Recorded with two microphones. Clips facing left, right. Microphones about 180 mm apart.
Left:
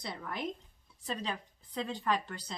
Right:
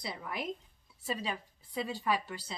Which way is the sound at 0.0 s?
5° right (ahead or behind).